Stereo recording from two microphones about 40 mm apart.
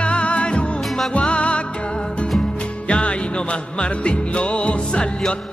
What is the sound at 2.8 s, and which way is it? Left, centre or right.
Music, left.